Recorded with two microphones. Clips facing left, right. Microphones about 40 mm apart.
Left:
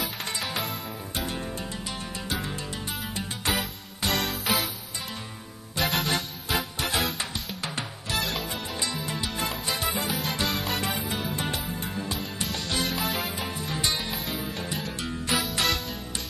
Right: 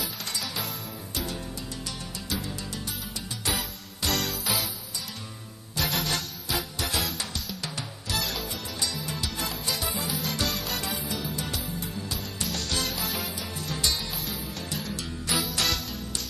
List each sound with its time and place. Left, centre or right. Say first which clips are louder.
0.0 s music: left 3 dB; left
4.0 s music: left 2 dB; left
4.3 s music: left 3 dB; centre
5.8 s music: left 3 dB; left
10.2 s music: left 2 dB; left
12.4 s music: left 1 dB; centre
13.2 s music: left 3 dB; left
13.7 s music: even; left
14.8 s music: left 2 dB; left
15.6 s music: left 2 dB; left